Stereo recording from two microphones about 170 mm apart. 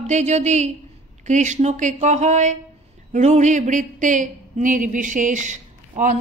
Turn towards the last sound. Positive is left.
turn(degrees=-45)  # may be behind; listen again after turning